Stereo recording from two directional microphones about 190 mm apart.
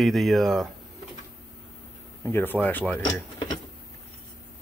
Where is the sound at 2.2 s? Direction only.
10° left (ahead or behind).